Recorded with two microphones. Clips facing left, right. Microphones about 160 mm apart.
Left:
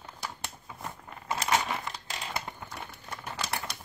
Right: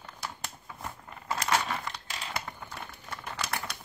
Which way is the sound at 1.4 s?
15° left (ahead or behind).